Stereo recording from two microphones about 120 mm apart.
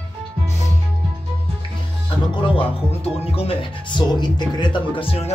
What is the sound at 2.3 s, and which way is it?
Speech, 50° left (ahead or behind).